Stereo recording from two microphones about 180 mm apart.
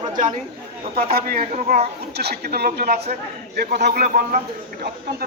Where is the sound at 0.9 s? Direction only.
55° right (ahead or behind).